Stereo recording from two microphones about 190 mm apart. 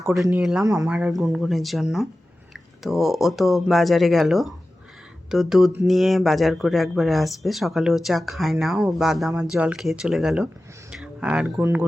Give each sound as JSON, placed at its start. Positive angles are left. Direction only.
{"t": 0.3, "sound": "speech", "side_deg": -5}
{"t": 0.6, "sound": "speech", "side_deg": -20}
{"t": 0.9, "sound": "speech", "side_deg": -5}
{"t": 10.9, "sound": "a sound", "side_deg": -5}
{"t": 11.6, "sound": "speech", "side_deg": -10}